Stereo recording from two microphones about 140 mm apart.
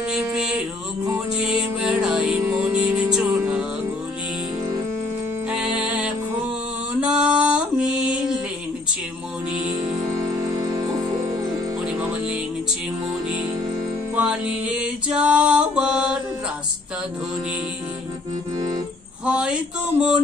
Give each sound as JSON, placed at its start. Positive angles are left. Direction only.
{"t": 0.1, "sound": "music", "side_deg": -5}
{"t": 2.0, "sound": "music", "side_deg": -5}
{"t": 5.5, "sound": "music", "side_deg": -5}
{"t": 10.3, "sound": "music", "side_deg": -25}
{"t": 11.8, "sound": "music", "side_deg": -5}
{"t": 14.1, "sound": "music", "side_deg": -10}
{"t": 19.2, "sound": "a sound", "side_deg": -5}